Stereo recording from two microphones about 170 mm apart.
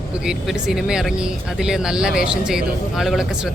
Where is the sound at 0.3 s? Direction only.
Centre (ahead or behind).